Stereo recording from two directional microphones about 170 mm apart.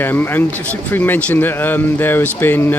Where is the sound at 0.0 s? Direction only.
10° left (ahead or behind).